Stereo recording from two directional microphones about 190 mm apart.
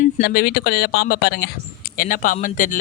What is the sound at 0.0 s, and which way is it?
Speech, 55° left (ahead or behind).